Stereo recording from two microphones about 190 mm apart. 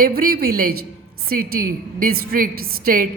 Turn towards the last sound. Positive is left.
turn(degrees=-50)  # may be behind; listen again after turning